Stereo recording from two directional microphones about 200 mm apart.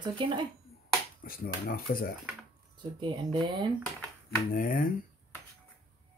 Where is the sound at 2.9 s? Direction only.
25° right (ahead or behind).